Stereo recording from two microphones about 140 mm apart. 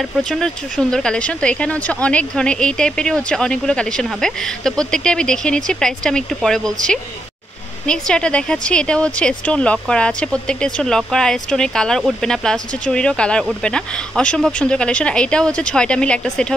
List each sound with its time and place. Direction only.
0.2 s speech: 5° left (ahead or behind)